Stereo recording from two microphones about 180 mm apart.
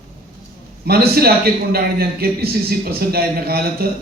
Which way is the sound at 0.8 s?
60° right (ahead or behind).